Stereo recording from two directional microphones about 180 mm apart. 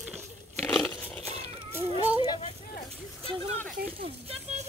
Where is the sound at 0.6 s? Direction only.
Centre (ahead or behind).